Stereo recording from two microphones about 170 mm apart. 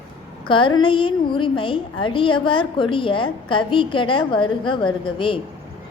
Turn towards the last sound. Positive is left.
turn(degrees=30)  # may be behind; listen again after turning